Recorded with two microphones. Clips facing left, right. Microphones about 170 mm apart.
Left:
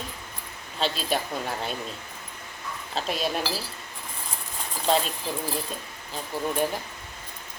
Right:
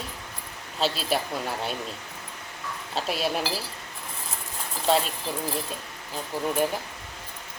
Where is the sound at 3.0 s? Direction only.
5° right (ahead or behind).